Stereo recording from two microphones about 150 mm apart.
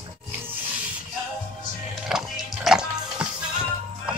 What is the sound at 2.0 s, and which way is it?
Music, centre (ahead or behind).